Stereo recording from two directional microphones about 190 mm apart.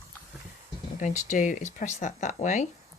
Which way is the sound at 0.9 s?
40° left (ahead or behind).